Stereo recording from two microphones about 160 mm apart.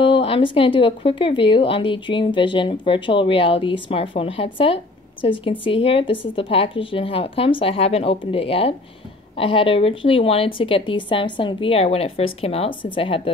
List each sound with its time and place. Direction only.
0.0 s speech: 35° left (ahead or behind)